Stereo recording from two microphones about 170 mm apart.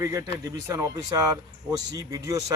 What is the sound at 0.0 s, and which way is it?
A man's voice, 15° right (ahead or behind).